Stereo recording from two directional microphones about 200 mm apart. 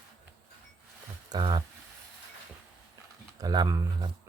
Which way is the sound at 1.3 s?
20° right (ahead or behind).